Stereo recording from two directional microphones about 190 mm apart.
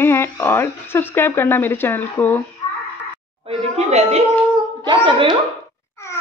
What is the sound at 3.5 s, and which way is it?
A woman's voice, 35° right (ahead or behind).